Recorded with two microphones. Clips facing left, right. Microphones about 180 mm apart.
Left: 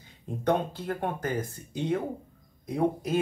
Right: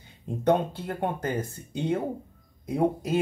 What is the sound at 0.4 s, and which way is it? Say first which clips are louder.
Speech: right 3 dB; 25° right (ahead or behind).